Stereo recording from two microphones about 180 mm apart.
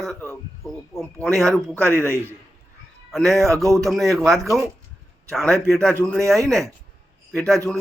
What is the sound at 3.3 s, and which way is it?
Speech, 15° right (ahead or behind).